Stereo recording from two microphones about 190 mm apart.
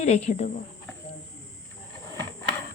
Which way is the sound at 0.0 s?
35° left (ahead or behind).